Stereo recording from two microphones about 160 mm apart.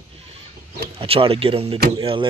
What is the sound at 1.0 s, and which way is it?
Speech, 35° right (ahead or behind).